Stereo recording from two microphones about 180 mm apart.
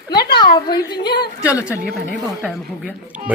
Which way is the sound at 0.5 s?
25° left (ahead or behind).